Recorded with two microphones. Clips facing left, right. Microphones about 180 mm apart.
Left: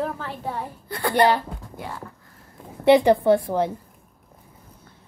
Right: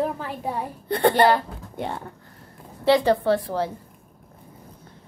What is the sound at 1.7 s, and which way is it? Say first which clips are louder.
Speech: right 7 dB; 30° right (ahead or behind).